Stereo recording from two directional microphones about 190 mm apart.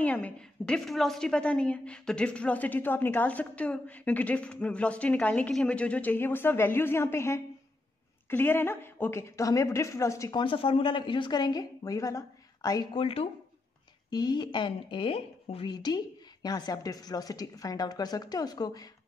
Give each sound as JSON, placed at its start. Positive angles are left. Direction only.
{"t": 0.0, "sound": "a woman's voice", "side_deg": 10}
{"t": 10.4, "sound": "a woman's voice", "side_deg": 30}